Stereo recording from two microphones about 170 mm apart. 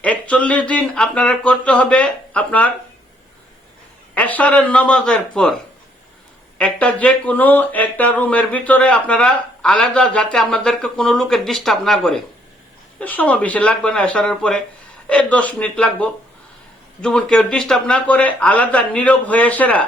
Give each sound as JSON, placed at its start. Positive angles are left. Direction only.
{"t": 0.0, "sound": "speech", "side_deg": 5}
{"t": 4.1, "sound": "speech", "side_deg": 10}
{"t": 6.6, "sound": "speech", "side_deg": 5}